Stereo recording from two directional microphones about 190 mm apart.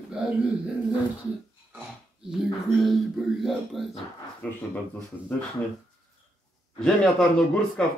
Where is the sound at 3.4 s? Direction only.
Centre (ahead or behind).